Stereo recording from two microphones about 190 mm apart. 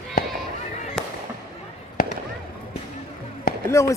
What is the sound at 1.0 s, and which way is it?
Fireworks, 5° left (ahead or behind).